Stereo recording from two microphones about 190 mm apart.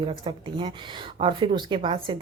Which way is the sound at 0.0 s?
25° right (ahead or behind).